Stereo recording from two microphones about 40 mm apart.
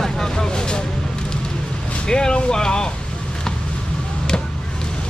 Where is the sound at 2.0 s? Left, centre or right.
Centre.